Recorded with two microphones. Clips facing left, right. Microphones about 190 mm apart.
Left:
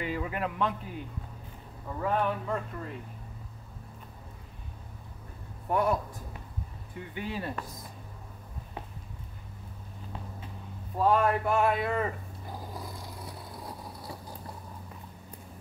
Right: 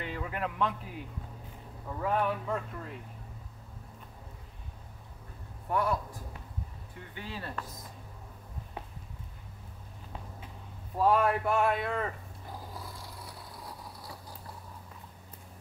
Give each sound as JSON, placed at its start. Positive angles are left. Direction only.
{"t": 0.0, "sound": "a man's voice", "side_deg": 5}
{"t": 5.7, "sound": "speech", "side_deg": 20}
{"t": 7.2, "sound": "speech", "side_deg": 15}
{"t": 11.0, "sound": "speech", "side_deg": -5}
{"t": 12.7, "sound": "vehicle", "side_deg": 15}